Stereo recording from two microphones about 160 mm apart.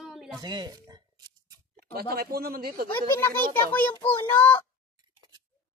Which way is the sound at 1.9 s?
75° right (ahead or behind).